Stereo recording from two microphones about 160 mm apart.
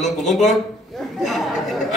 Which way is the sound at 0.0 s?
Centre (ahead or behind).